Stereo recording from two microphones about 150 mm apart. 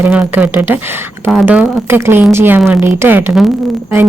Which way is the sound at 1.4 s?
15° right (ahead or behind).